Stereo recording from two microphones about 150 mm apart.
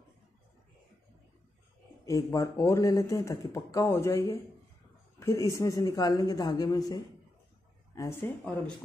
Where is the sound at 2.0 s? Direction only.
20° left (ahead or behind).